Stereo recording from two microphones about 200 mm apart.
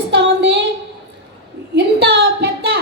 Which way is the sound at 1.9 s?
55° right (ahead or behind).